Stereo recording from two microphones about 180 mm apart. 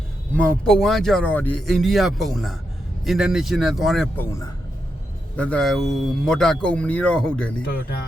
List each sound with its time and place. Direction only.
0.3 s speech: 5° left (ahead or behind)
4.2 s a man's voice: 15° left (ahead or behind)
5.4 s speech: 5° left (ahead or behind)
7.8 s speech: 60° left (ahead or behind)